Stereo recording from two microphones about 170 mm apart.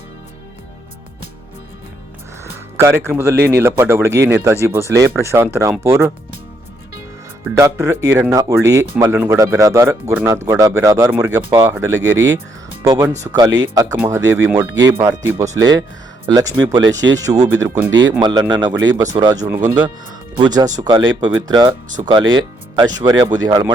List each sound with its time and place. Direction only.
2.4 s speech: 15° right (ahead or behind)
7.5 s speech: 15° right (ahead or behind)
8.3 s speech: 20° right (ahead or behind)
17.8 s speech: 90° right
18.2 s speech: 25° right (ahead or behind)